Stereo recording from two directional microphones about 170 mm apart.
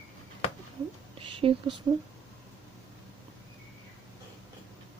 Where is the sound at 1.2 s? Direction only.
30° right (ahead or behind).